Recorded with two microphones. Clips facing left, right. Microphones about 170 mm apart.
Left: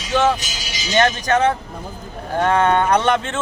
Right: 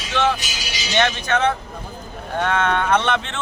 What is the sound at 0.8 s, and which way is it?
Speech, 40° left (ahead or behind).